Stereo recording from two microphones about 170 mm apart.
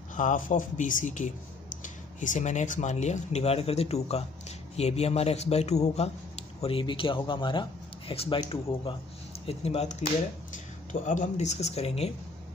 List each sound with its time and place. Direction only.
0.1 s speech: 50° left (ahead or behind)